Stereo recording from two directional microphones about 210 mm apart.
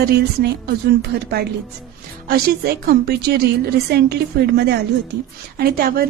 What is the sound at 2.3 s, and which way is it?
A woman's voice, 45° right (ahead or behind).